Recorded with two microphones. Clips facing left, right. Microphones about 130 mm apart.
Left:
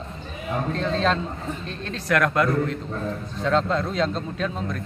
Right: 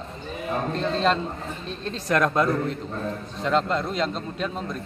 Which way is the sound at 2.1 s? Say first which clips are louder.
Even; 30° right (ahead or behind).